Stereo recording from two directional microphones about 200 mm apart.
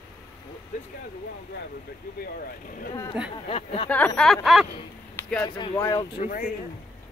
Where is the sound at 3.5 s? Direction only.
30° left (ahead or behind).